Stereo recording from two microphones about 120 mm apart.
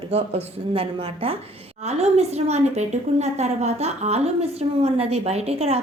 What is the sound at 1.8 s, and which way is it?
A woman's voice, 65° right (ahead or behind).